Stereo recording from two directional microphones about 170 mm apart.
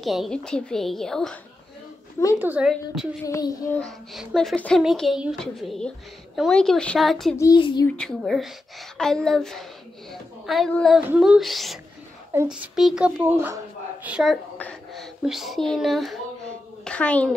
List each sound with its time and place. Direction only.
0.0 s speech: centre (ahead or behind)
2.3 s speech: 10° right (ahead or behind)
3.3 s a child's voice: 20° left (ahead or behind)
3.8 s speech: centre (ahead or behind)
7.3 s a child's voice: 20° left (ahead or behind)
8.2 s a child's voice: centre (ahead or behind)